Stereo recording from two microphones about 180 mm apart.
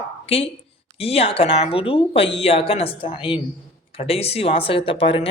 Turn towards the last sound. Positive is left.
turn(degrees=30)  # may be behind; listen again after turning